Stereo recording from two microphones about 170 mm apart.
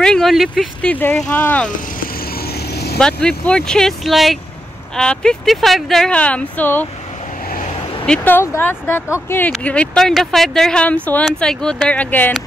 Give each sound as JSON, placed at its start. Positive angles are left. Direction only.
{"t": 0.0, "sound": "speech", "side_deg": 5}
{"t": 0.9, "sound": "speech", "side_deg": 10}
{"t": 2.3, "sound": "vehicle", "side_deg": 65}
{"t": 3.0, "sound": "speech", "side_deg": 5}
{"t": 8.0, "sound": "speech", "side_deg": 10}